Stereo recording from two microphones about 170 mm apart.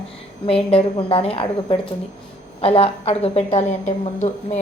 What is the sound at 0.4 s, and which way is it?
A woman's voice, 35° left (ahead or behind).